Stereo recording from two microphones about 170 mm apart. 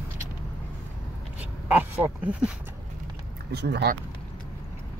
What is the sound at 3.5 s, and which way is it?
Speech, 75° right (ahead or behind).